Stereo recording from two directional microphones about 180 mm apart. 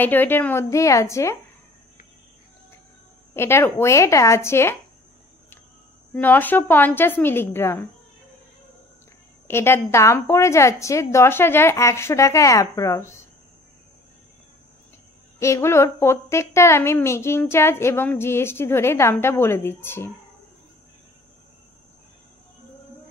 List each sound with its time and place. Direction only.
0.0 s a woman's voice: 10° left (ahead or behind)
3.3 s a woman's voice: 15° left (ahead or behind)
6.2 s a woman's voice: 10° left (ahead or behind)
9.5 s a woman's voice: 15° left (ahead or behind)
15.3 s a woman's voice: 15° left (ahead or behind)